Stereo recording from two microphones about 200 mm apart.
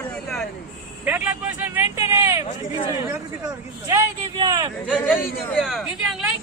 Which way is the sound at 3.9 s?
20° right (ahead or behind).